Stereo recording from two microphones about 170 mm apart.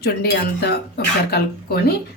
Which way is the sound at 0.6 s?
70° left (ahead or behind).